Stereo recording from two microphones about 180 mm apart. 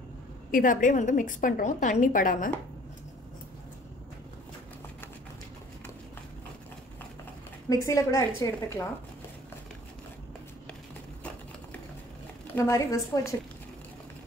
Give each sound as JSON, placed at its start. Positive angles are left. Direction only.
{"t": 0.5, "sound": "a woman's voice", "side_deg": 50}
{"t": 7.7, "sound": "a woman's voice", "side_deg": 15}
{"t": 12.5, "sound": "a woman's voice", "side_deg": 15}